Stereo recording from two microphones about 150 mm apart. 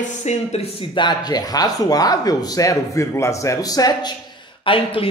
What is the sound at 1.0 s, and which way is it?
Speech, 25° left (ahead or behind).